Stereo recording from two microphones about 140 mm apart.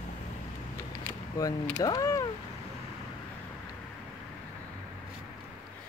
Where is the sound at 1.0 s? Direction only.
20° left (ahead or behind).